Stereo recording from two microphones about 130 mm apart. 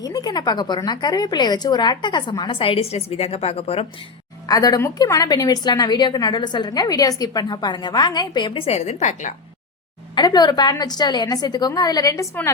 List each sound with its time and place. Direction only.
0.0 s a woman's voice: 30° left (ahead or behind); by 3.8 s 50° left (ahead or behind)
4.4 s a woman's voice: 30° left (ahead or behind); by 9.3 s 65° left (ahead or behind)
10.2 s a woman's voice: 35° left (ahead or behind)